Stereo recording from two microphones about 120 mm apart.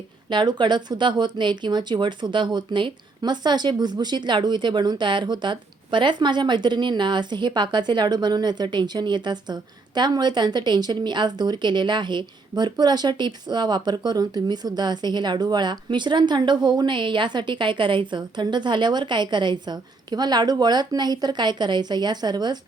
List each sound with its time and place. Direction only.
0.3 s speech: 40° right (ahead or behind)